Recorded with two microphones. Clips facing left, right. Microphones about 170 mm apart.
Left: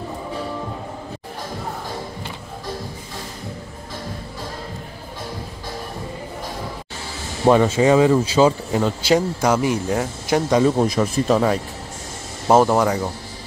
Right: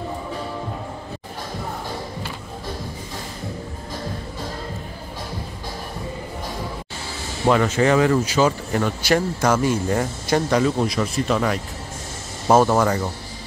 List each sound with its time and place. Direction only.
7.4 s speech: 25° left (ahead or behind); by 10.4 s 5° left (ahead or behind)
10.6 s speech: 35° left (ahead or behind)
12.4 s speech: 15° left (ahead or behind)